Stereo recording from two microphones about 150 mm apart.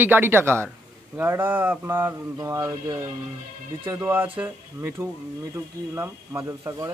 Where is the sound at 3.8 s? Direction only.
15° right (ahead or behind).